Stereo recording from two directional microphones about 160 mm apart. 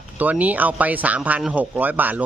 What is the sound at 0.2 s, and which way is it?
A man's voice, 10° right (ahead or behind).